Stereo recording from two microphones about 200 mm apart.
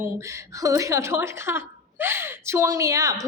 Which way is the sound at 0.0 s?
15° right (ahead or behind).